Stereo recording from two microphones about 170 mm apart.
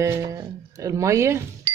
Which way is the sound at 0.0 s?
20° right (ahead or behind).